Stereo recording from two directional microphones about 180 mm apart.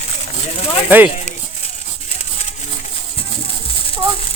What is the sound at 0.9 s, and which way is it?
Speech, 10° right (ahead or behind).